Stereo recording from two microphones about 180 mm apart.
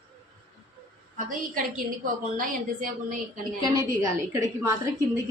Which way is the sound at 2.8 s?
50° right (ahead or behind).